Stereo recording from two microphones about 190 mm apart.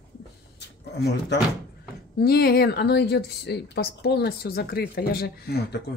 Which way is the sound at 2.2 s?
55° left (ahead or behind).